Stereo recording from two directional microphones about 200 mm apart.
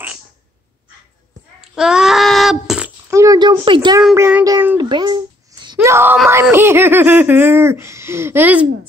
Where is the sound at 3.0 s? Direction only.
15° right (ahead or behind).